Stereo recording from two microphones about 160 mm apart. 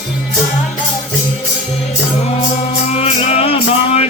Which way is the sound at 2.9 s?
40° left (ahead or behind).